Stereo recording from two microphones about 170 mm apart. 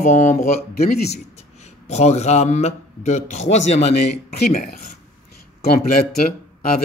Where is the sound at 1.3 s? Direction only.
40° left (ahead or behind).